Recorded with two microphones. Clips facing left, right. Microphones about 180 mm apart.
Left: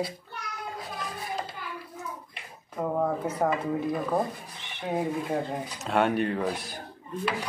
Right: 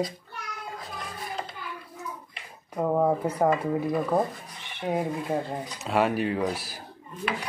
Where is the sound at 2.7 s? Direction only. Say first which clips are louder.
Right 4 dB; 15° right (ahead or behind).